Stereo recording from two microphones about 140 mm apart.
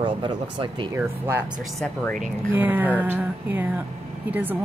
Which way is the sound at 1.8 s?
5° left (ahead or behind).